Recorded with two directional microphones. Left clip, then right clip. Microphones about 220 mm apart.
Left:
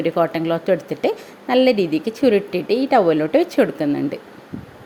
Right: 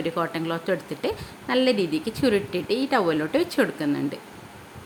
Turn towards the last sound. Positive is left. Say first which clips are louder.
# left 5 dB
turn(degrees=15)  # may be behind; listen again after turning